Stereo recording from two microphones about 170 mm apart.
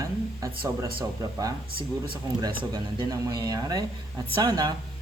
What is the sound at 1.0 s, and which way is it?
Speech, 30° right (ahead or behind).